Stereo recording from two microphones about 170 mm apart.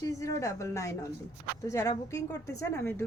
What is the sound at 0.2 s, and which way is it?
A woman's voice, 20° left (ahead or behind).